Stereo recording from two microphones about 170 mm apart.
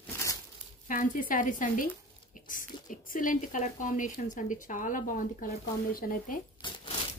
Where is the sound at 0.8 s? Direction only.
50° left (ahead or behind).